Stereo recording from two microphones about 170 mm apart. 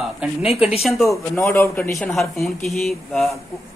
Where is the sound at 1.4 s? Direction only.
15° left (ahead or behind).